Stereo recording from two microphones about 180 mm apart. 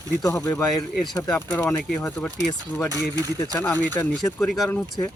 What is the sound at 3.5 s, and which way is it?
Speech, 10° left (ahead or behind).